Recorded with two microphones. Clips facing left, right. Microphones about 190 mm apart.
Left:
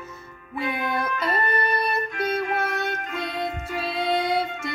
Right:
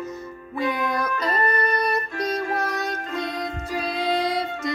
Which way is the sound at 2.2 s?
35° right (ahead or behind).